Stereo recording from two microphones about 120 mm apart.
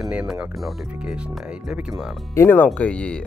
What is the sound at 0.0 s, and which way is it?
Speech, 5° right (ahead or behind).